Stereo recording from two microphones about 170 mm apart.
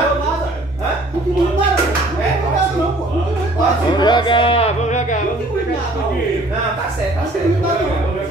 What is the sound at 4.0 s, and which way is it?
Music, 25° left (ahead or behind).